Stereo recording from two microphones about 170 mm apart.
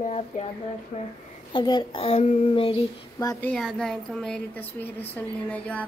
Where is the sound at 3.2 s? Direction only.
20° left (ahead or behind).